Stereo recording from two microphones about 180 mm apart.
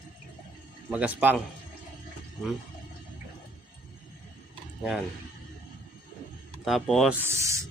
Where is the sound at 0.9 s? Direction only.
10° right (ahead or behind).